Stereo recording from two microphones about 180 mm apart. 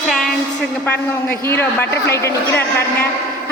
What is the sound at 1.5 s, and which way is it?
Speech, 15° left (ahead or behind).